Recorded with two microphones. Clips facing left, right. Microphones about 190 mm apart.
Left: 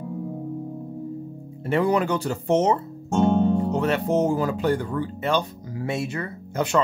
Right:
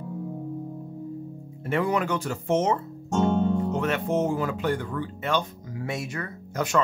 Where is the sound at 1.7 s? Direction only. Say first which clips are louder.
Left 4 dB; 30° left (ahead or behind).